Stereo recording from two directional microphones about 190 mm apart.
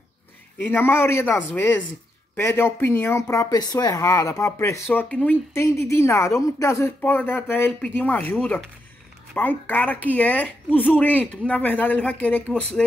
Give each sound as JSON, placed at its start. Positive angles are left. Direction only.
{"t": 0.6, "sound": "a woman's voice", "side_deg": 10}